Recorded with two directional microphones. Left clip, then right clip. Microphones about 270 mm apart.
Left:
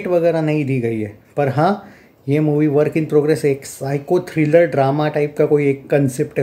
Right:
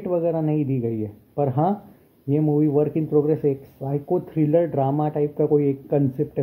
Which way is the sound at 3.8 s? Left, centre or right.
Left.